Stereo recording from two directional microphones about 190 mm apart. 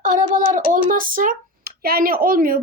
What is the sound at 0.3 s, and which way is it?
A woman's voice, 45° right (ahead or behind).